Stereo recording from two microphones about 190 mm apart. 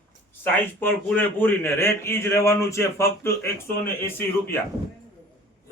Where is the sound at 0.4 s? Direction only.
10° left (ahead or behind).